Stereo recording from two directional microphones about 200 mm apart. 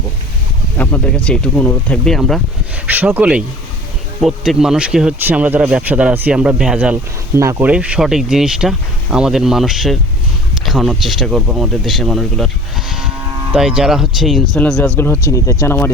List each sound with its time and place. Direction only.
0.8 s speech: 10° left (ahead or behind)